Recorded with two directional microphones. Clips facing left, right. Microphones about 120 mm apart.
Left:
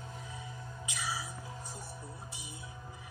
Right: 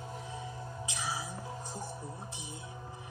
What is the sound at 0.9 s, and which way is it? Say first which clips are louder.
Music: even; 25° right (ahead or behind).